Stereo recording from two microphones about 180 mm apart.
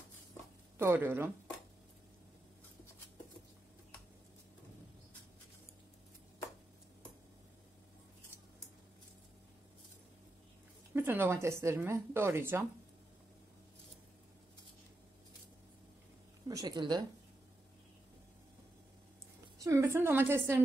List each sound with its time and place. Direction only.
0.7 s speech: 10° right (ahead or behind)
10.9 s speech: 10° right (ahead or behind)
16.4 s speech: 20° right (ahead or behind)
19.6 s speech: 15° right (ahead or behind)